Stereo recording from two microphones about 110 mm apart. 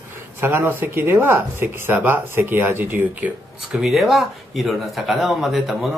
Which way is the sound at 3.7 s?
Centre (ahead or behind).